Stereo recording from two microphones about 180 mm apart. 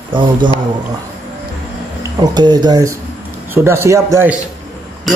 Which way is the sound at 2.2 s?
25° right (ahead or behind).